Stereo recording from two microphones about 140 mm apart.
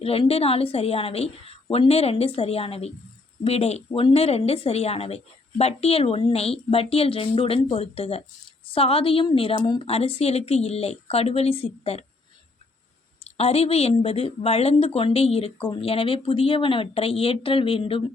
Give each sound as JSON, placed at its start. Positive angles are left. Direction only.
{"t": 0.0, "sound": "speech", "side_deg": 45}
{"t": 13.2, "sound": "speech", "side_deg": 45}